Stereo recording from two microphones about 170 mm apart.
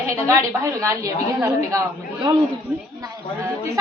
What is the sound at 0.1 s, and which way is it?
A woman's voice, 15° right (ahead or behind).